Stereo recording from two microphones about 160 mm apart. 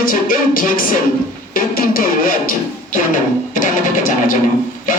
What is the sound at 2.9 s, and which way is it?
Speech, 55° left (ahead or behind).